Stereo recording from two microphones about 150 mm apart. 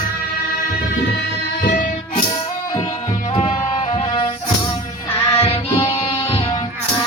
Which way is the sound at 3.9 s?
40° left (ahead or behind).